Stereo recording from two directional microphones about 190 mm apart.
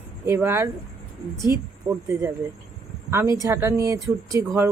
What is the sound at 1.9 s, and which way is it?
Speech, 15° right (ahead or behind).